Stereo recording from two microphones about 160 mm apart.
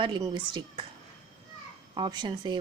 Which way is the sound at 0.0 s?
30° right (ahead or behind).